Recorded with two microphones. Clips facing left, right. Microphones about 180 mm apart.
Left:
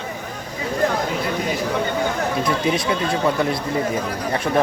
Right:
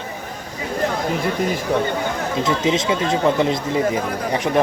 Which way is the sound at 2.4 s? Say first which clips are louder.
Right 4 dB; 20° right (ahead or behind).